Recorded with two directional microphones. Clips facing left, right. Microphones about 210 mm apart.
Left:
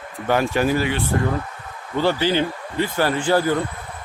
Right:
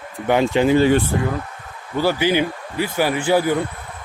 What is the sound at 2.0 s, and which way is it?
Speech, 10° right (ahead or behind).